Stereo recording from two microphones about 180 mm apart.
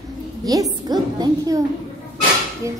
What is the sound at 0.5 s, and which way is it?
A woman's voice, 20° right (ahead or behind).